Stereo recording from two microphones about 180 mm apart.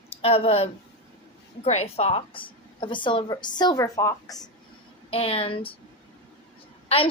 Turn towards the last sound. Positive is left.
turn(degrees=35)  # may be behind; listen again after turning